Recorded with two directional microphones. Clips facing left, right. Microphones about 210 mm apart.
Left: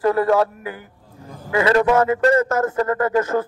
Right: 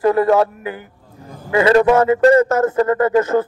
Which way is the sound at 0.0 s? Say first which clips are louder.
Right 3 dB; 20° right (ahead or behind).